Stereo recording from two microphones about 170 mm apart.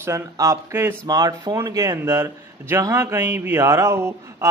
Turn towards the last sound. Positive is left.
turn(degrees=-15)  # may be behind; listen again after turning